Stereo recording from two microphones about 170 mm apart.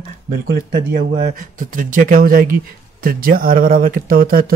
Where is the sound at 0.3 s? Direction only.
60° right (ahead or behind).